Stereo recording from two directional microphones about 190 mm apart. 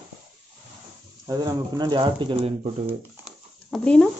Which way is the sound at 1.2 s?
20° right (ahead or behind).